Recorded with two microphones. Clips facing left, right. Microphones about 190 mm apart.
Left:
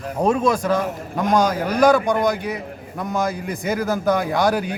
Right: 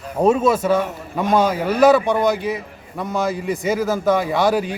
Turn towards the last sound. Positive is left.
turn(degrees=0)  # may be behind; listen again after turning